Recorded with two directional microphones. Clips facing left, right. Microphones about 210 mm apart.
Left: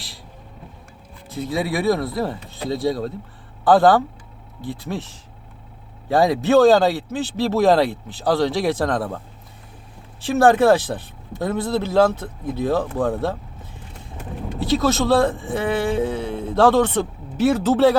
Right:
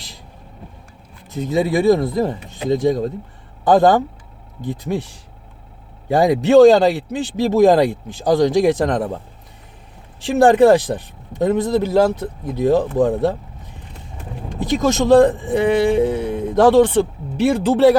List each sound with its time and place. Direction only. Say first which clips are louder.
1.5 s a man's voice: right 6 dB; 20° right (ahead or behind)
10.2 s a man's voice: right 3 dB; 15° right (ahead or behind)
14.6 s a man's voice: right 2 dB; 15° right (ahead or behind)